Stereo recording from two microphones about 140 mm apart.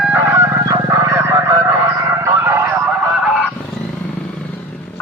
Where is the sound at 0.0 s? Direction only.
15° right (ahead or behind).